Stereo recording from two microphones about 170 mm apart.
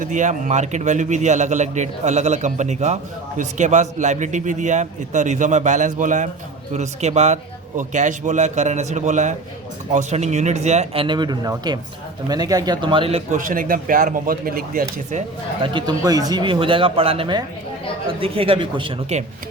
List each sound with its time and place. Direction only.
0.0 s speech: 45° right (ahead or behind)
13.3 s speech: 55° right (ahead or behind)
15.6 s speech: 25° right (ahead or behind)